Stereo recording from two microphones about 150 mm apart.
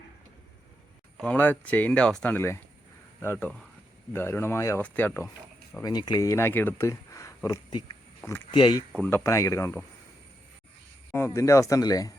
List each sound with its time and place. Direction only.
1.1 s speech: 10° left (ahead or behind)
5.8 s speech: 25° left (ahead or behind)
8.2 s speech: 15° left (ahead or behind)
8.5 s speech: 30° left (ahead or behind)
9.0 s speech: 15° left (ahead or behind)
11.3 s speech: 20° left (ahead or behind)